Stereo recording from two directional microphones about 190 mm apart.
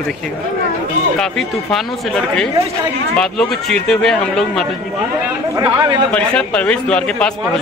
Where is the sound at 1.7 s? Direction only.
5° left (ahead or behind).